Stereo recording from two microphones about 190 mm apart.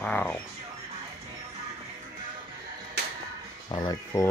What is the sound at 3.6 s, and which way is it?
Speech, 20° left (ahead or behind).